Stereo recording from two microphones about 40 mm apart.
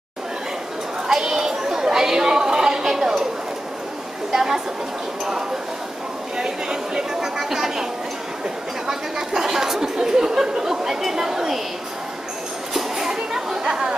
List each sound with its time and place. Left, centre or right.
1.0 s chatter: centre
4.3 s a woman's voice: centre
6.3 s speech: centre
7.3 s chatter: centre
8.8 s speech: centre
12.7 s a sound: centre